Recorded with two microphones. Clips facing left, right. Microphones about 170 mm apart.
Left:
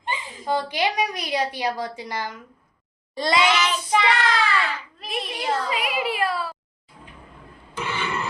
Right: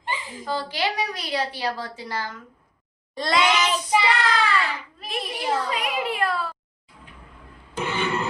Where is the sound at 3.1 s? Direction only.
Centre (ahead or behind).